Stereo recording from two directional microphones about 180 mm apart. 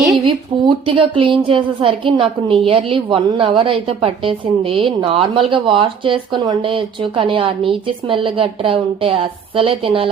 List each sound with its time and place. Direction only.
0.3 s a woman's voice: 30° right (ahead or behind)